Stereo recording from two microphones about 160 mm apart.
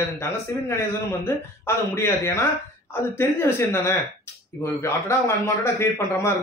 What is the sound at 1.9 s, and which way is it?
A man's voice, 15° left (ahead or behind).